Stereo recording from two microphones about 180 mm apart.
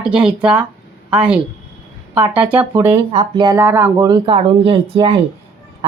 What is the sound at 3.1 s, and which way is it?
Speech, 25° right (ahead or behind).